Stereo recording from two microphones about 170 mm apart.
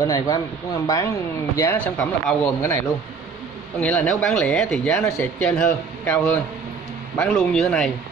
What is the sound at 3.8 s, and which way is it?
Speech, 10° left (ahead or behind).